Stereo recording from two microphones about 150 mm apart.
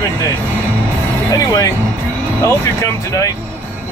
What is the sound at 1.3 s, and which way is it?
Speech, 25° left (ahead or behind).